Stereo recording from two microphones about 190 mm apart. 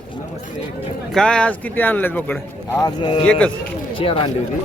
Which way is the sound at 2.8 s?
25° left (ahead or behind).